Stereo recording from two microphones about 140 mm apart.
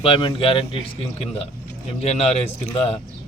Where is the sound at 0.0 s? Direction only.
35° left (ahead or behind).